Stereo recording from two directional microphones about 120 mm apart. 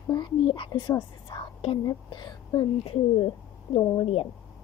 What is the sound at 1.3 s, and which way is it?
Whispering, 45° left (ahead or behind).